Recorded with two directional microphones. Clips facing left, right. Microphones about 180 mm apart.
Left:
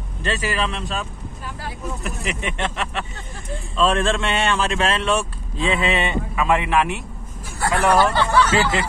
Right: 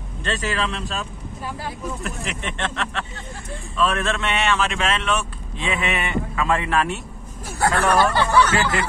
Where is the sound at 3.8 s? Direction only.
30° left (ahead or behind).